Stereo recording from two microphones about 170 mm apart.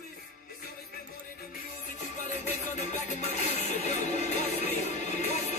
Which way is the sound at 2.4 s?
40° left (ahead or behind).